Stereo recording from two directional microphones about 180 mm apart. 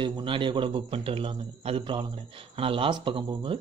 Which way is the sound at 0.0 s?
25° right (ahead or behind).